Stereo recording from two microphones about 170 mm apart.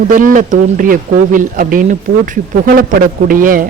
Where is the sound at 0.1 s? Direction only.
55° right (ahead or behind).